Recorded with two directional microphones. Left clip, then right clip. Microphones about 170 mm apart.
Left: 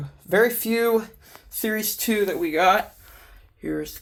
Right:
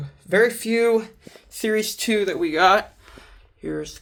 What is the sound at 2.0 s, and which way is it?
Speech, 25° right (ahead or behind).